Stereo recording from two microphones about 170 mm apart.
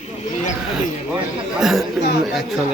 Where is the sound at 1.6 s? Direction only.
Centre (ahead or behind).